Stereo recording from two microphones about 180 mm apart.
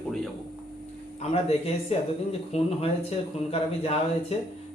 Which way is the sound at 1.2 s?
35° left (ahead or behind).